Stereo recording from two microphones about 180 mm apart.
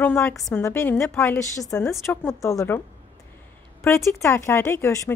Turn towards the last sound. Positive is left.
turn(degrees=15)  # may be behind; listen again after turning